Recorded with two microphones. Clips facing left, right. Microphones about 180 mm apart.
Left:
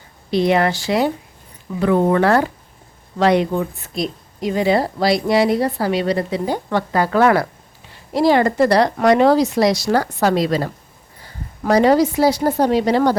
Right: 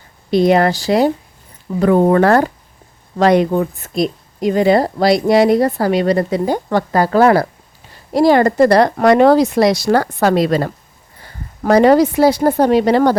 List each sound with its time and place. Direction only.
0.3 s a woman's voice: 45° right (ahead or behind)
8.1 s a woman's voice: 45° right (ahead or behind)